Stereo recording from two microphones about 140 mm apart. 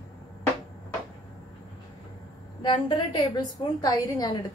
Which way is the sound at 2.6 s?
35° left (ahead or behind).